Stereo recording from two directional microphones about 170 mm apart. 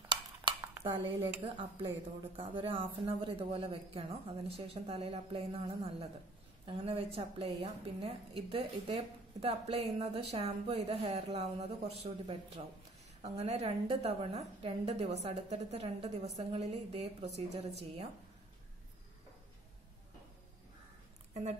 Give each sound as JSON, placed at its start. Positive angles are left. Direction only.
{"t": 0.1, "sound": "dishes", "side_deg": -25}
{"t": 0.7, "sound": "a woman's voice", "side_deg": -25}
{"t": 21.3, "sound": "a sound", "side_deg": -40}